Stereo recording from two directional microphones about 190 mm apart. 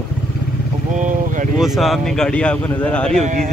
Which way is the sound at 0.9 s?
40° right (ahead or behind).